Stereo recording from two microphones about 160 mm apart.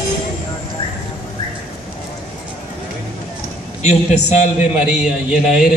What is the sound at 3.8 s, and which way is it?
Speech, 45° left (ahead or behind).